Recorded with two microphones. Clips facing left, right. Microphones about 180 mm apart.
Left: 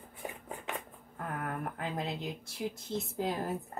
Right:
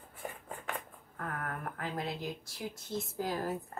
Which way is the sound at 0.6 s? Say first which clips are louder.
Right 1 dB; 20° left (ahead or behind).